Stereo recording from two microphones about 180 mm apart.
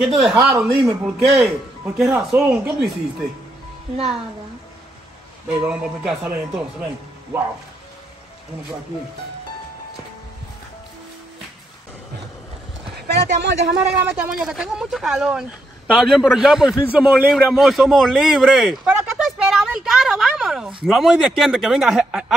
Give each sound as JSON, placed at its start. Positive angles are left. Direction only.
{"t": 0.0, "sound": "a man's voice", "side_deg": -5}
{"t": 0.6, "sound": "speech", "side_deg": -15}
{"t": 1.2, "sound": "a man's voice", "side_deg": 0}
{"t": 5.5, "sound": "speech", "side_deg": -10}
{"t": 13.0, "sound": "speech", "side_deg": -65}
{"t": 13.7, "sound": "a man's voice", "side_deg": -5}